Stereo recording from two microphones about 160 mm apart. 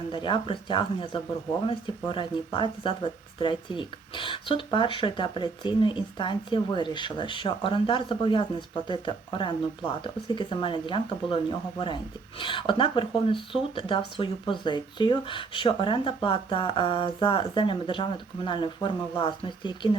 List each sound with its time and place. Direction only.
0.1 s speech: 30° left (ahead or behind)
12.4 s speech: 30° left (ahead or behind)